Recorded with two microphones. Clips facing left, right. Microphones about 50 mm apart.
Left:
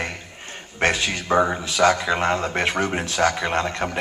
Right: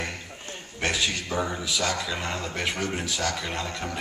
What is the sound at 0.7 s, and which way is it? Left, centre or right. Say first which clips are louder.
A man's voice: left 6 dB; left.